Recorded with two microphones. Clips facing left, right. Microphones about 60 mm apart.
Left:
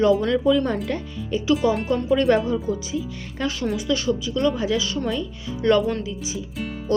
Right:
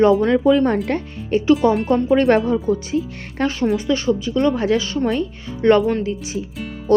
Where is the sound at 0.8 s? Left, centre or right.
Right.